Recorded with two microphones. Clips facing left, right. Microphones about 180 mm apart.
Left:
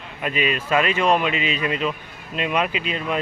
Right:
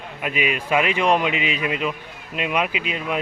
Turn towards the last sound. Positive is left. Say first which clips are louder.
# left 1 dB
turn(degrees=-10)  # may be behind; listen again after turning